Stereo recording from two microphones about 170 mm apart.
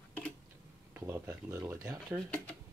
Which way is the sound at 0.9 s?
15° right (ahead or behind).